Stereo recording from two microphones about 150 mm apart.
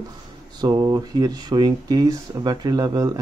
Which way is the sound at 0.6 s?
25° right (ahead or behind).